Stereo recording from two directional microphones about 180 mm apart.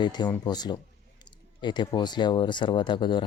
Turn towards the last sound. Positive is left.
turn(degrees=25)  # may be behind; listen again after turning